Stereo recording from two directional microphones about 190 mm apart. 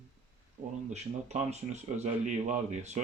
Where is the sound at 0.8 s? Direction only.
40° right (ahead or behind).